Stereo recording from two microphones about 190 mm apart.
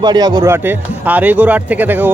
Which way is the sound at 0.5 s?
10° right (ahead or behind).